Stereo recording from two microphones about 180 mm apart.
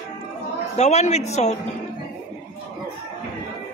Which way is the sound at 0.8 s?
40° left (ahead or behind).